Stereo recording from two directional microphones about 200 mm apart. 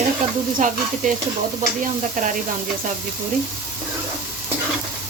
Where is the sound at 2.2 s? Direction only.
45° right (ahead or behind).